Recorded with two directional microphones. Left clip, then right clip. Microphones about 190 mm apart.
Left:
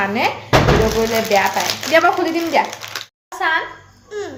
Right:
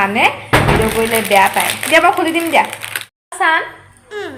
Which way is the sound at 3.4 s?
40° right (ahead or behind).